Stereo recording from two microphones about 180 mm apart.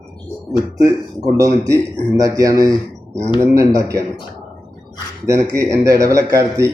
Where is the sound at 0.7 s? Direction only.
20° right (ahead or behind).